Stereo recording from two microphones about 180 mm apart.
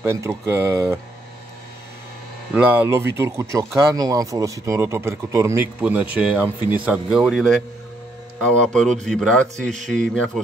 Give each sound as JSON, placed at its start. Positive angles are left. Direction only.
{"t": 0.0, "sound": "speech", "side_deg": -15}
{"t": 2.5, "sound": "a man's voice", "side_deg": -10}